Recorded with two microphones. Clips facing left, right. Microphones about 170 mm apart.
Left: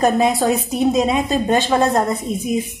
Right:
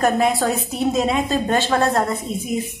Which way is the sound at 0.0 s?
20° left (ahead or behind).